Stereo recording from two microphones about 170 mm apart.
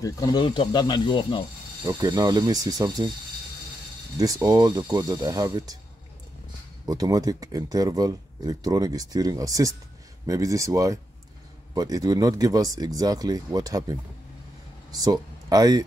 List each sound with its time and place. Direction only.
0.0 s speech: 20° left (ahead or behind)
1.9 s speech: 20° right (ahead or behind)
4.2 s speech: 20° right (ahead or behind)
6.9 s speech: 20° right (ahead or behind)